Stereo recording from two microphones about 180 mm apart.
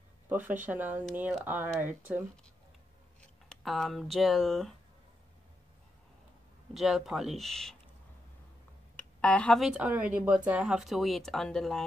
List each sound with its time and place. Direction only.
0.3 s speech: 10° right (ahead or behind)
3.2 s speech: centre (ahead or behind)
6.7 s speech: centre (ahead or behind)
8.9 s speech: 5° left (ahead or behind)